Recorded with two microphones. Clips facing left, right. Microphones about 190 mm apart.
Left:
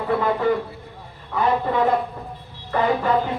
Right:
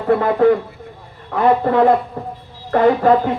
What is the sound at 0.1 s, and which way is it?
Speech, 50° right (ahead or behind).